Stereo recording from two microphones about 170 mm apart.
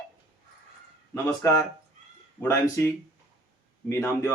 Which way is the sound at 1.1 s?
15° left (ahead or behind).